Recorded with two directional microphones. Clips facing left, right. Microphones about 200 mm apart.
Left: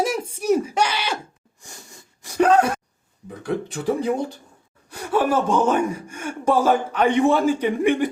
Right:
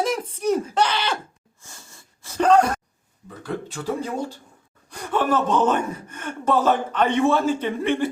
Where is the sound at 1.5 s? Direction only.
15° left (ahead or behind).